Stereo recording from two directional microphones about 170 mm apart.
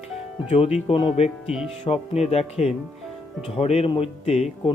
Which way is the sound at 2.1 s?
40° left (ahead or behind).